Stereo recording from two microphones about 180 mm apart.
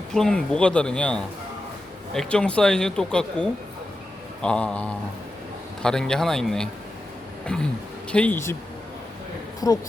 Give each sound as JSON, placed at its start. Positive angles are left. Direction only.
{"t": 0.1, "sound": "speech", "side_deg": 5}
{"t": 9.6, "sound": "a woman's voice", "side_deg": 20}